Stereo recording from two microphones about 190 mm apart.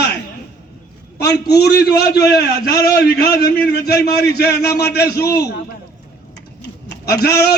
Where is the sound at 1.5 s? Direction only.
60° left (ahead or behind).